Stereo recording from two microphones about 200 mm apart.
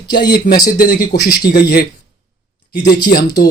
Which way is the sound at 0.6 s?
45° left (ahead or behind).